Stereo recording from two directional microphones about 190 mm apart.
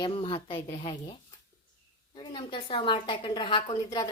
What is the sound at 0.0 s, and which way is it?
A woman's voice, 25° left (ahead or behind).